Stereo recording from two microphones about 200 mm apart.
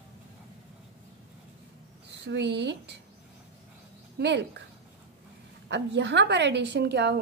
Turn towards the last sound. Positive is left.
turn(degrees=-55)  # may be behind; listen again after turning